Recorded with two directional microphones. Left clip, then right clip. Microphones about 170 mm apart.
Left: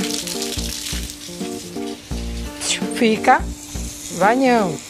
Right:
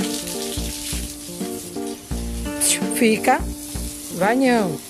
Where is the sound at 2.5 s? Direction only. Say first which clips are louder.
Even; 15° right (ahead or behind).